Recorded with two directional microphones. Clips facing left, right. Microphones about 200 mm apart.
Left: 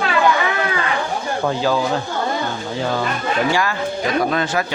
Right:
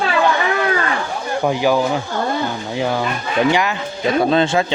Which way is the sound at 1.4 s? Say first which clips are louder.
Right 3 dB; 15° right (ahead or behind).